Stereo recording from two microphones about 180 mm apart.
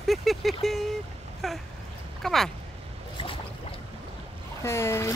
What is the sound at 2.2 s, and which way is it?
Speech, centre (ahead or behind).